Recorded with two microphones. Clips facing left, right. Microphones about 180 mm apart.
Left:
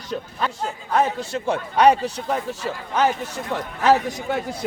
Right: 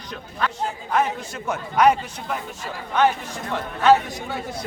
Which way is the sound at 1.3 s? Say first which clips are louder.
Left 4 dB; 30° left (ahead or behind).